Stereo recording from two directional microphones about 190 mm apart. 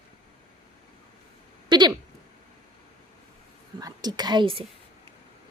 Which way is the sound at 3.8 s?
20° right (ahead or behind).